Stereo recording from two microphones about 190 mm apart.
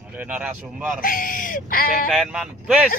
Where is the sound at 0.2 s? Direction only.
5° right (ahead or behind).